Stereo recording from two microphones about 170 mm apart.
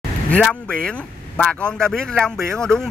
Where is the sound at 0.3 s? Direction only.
5° left (ahead or behind).